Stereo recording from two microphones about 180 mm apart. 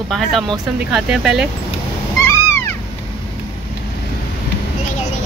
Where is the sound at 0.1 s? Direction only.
Centre (ahead or behind).